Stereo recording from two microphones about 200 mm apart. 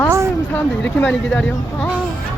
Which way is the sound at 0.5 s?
10° left (ahead or behind).